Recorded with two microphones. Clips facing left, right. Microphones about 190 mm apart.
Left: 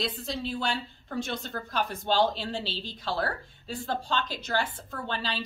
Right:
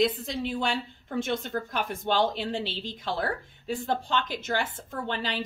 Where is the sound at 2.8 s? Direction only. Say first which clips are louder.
Right 1 dB; 20° right (ahead or behind).